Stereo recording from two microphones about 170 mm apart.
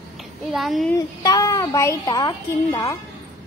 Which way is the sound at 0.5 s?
Centre (ahead or behind).